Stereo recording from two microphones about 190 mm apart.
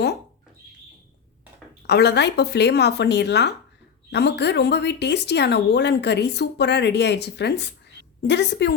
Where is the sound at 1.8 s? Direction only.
60° left (ahead or behind).